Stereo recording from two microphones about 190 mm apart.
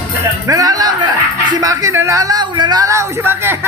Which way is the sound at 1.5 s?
15° right (ahead or behind).